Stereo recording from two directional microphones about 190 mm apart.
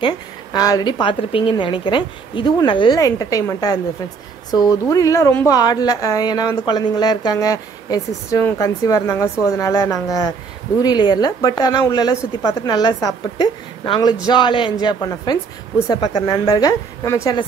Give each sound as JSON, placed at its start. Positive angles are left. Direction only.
{"t": 0.0, "sound": "a woman's voice", "side_deg": 20}